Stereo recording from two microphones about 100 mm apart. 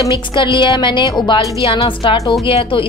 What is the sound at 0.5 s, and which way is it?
Speech, 55° left (ahead or behind).